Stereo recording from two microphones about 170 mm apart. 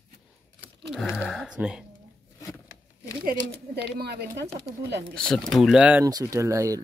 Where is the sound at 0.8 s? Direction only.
Centre (ahead or behind).